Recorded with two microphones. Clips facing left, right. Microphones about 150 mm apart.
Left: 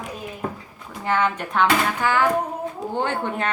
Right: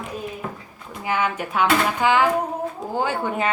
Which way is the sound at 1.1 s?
10° right (ahead or behind).